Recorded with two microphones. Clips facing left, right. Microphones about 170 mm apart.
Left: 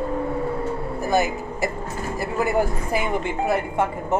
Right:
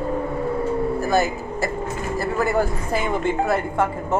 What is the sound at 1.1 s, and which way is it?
Speech, 15° left (ahead or behind).